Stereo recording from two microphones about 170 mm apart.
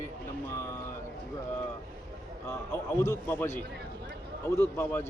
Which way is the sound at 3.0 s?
15° left (ahead or behind).